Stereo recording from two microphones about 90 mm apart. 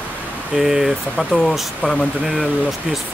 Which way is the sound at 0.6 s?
5° right (ahead or behind).